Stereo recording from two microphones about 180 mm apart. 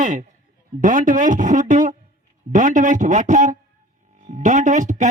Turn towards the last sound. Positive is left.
turn(degrees=-45)  # may be behind; listen again after turning